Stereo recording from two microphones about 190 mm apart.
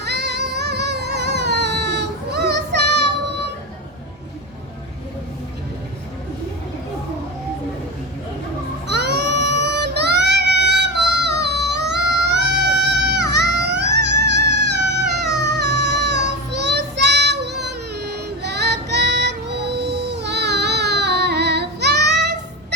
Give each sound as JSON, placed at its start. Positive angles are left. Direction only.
{"t": 0.0, "sound": "music", "side_deg": -60}
{"t": 8.9, "sound": "child singing", "side_deg": -60}
{"t": 10.7, "sound": "yodeling", "side_deg": -65}
{"t": 18.0, "sound": "child singing", "side_deg": -60}